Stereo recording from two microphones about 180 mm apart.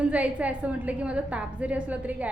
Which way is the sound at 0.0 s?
5° right (ahead or behind).